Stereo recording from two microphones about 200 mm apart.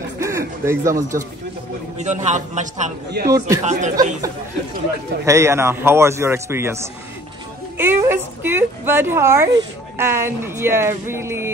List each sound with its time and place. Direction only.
0.2 s a sound: 15° right (ahead or behind)
2.0 s a man's voice: 35° right (ahead or behind)
3.3 s a woman's voice: 15° right (ahead or behind)
3.6 s a man's voice: 35° right (ahead or behind)
5.2 s a woman's voice: 15° right (ahead or behind)